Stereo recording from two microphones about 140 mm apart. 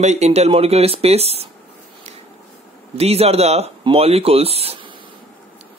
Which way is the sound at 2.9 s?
45° right (ahead or behind).